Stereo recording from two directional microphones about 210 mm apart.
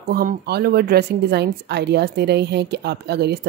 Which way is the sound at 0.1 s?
45° right (ahead or behind).